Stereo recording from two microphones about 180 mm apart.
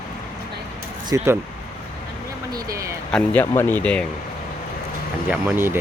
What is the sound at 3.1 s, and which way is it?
Speech, 10° left (ahead or behind).